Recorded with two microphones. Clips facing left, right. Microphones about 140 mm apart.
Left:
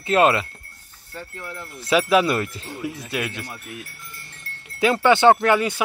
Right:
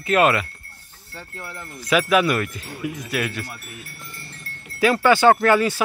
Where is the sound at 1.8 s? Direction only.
30° left (ahead or behind).